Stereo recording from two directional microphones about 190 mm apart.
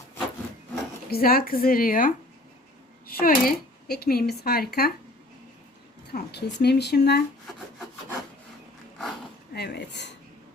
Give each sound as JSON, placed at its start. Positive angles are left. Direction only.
{"t": 1.1, "sound": "speech", "side_deg": 50}
{"t": 6.1, "sound": "speech", "side_deg": 60}
{"t": 9.5, "sound": "speech", "side_deg": 60}